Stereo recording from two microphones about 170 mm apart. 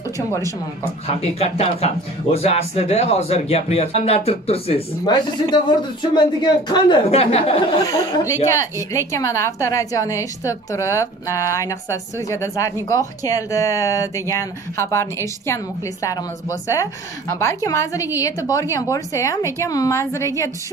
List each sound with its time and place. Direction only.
1.0 s speech: 35° left (ahead or behind)
5.0 s a woman's voice: 25° left (ahead or behind)
7.8 s a woman's voice: 20° left (ahead or behind)